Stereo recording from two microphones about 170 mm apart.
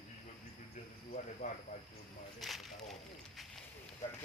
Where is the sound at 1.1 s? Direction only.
50° left (ahead or behind).